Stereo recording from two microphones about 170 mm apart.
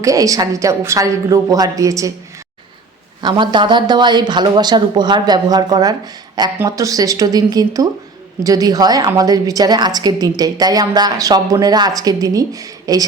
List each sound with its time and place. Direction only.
0.0 s a woman's voice: 20° right (ahead or behind)
3.2 s a woman's voice: 25° right (ahead or behind)